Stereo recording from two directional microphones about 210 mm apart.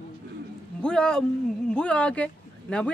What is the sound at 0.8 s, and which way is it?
Speech, 5° left (ahead or behind).